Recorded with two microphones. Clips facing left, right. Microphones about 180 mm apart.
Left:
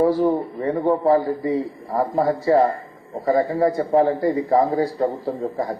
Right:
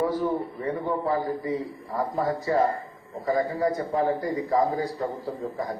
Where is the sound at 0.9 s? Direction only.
40° left (ahead or behind).